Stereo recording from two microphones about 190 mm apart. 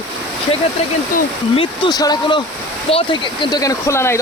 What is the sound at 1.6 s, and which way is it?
Speech, 25° left (ahead or behind).